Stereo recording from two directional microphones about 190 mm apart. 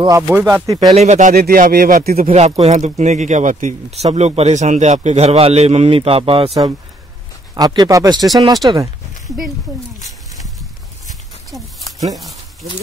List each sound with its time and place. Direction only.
0.3 s speech: 10° right (ahead or behind)
0.9 s speech: 35° right (ahead or behind)
1.3 s speech: 55° right (ahead or behind)
2.1 s speech: 35° right (ahead or behind); by 8.9 s 20° right (ahead or behind)